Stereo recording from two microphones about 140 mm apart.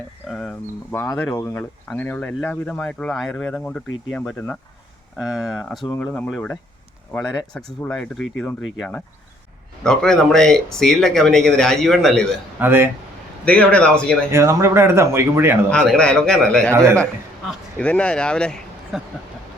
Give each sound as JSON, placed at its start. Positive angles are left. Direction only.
{"t": 0.3, "sound": "speech", "side_deg": 0}
{"t": 12.5, "sound": "speech", "side_deg": -15}
{"t": 13.4, "sound": "speech", "side_deg": 10}
{"t": 14.3, "sound": "speech", "side_deg": -20}
{"t": 15.7, "sound": "speech", "side_deg": 5}
{"t": 16.7, "sound": "a man's voice", "side_deg": -20}
{"t": 17.7, "sound": "speech", "side_deg": 10}